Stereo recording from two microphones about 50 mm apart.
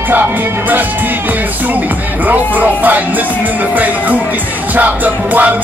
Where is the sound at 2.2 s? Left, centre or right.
Right.